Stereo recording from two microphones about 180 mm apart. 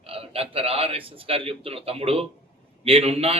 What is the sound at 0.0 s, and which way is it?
A man's voice, 35° right (ahead or behind).